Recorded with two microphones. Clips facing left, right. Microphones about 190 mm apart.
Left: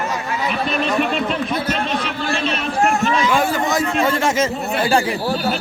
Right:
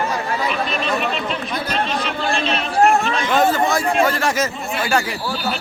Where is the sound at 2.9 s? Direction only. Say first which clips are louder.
Left 2 dB; 55° right (ahead or behind).